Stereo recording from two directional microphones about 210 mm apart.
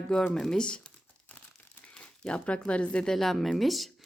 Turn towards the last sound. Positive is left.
turn(degrees=0)  # may be behind; listen again after turning